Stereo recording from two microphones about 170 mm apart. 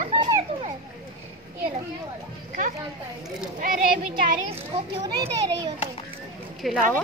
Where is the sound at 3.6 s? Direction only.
55° right (ahead or behind).